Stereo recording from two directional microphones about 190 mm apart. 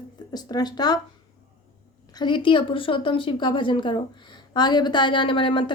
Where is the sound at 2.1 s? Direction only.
25° left (ahead or behind).